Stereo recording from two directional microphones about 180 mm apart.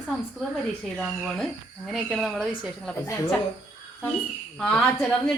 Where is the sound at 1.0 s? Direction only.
Centre (ahead or behind).